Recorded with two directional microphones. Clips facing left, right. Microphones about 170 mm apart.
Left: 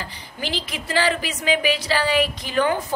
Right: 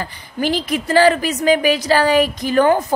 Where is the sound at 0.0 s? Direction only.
50° right (ahead or behind).